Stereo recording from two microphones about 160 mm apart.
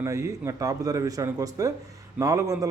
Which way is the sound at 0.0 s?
20° right (ahead or behind).